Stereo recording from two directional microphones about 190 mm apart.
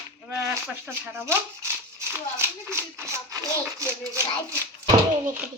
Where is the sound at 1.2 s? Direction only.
15° right (ahead or behind).